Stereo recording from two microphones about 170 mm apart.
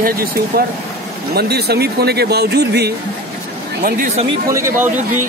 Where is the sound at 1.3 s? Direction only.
70° right (ahead or behind).